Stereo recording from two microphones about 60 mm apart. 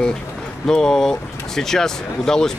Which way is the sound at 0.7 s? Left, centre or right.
Centre.